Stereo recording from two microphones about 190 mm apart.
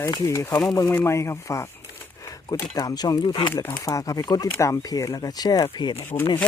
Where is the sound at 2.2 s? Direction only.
15° left (ahead or behind).